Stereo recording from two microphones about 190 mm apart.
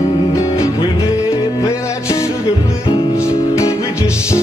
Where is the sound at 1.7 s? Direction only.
15° left (ahead or behind).